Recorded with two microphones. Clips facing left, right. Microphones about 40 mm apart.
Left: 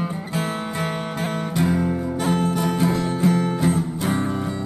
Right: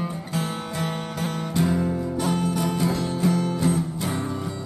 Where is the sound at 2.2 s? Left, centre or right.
Left.